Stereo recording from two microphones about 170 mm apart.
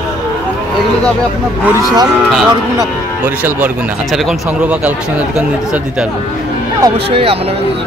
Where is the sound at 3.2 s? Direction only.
10° right (ahead or behind).